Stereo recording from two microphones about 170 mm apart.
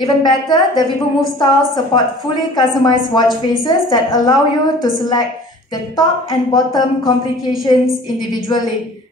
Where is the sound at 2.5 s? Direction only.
25° left (ahead or behind).